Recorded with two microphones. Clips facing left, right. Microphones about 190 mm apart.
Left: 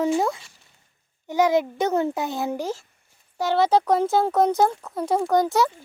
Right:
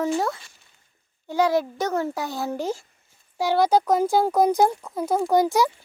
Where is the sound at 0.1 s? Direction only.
10° left (ahead or behind).